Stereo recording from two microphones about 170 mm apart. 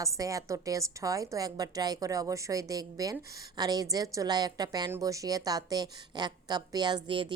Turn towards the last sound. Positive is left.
turn(degrees=-30)  # may be behind; listen again after turning